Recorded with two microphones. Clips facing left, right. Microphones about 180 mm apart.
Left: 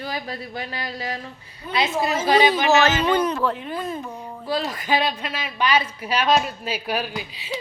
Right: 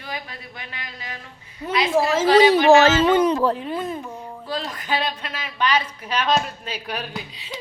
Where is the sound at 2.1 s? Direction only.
70° right (ahead or behind).